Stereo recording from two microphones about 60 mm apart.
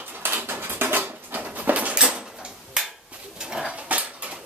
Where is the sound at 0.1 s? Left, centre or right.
Right; by 2.3 s centre.